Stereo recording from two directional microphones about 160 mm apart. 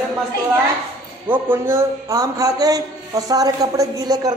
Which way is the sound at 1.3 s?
15° right (ahead or behind).